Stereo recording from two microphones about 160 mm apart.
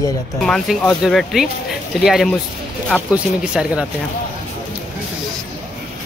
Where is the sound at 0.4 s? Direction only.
5° left (ahead or behind).